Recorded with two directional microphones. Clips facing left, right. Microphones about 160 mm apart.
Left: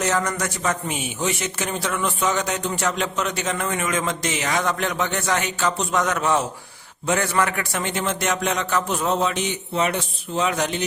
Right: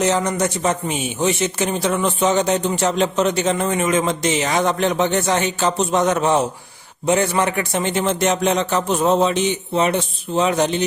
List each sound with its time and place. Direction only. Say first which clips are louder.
0.0 s a man's voice: right 5 dB; 20° right (ahead or behind)